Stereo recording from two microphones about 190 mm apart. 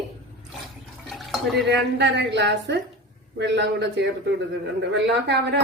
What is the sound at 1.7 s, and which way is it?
A woman's voice, 65° right (ahead or behind).